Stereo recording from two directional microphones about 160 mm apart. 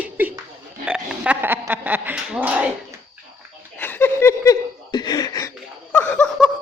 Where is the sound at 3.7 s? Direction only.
15° left (ahead or behind).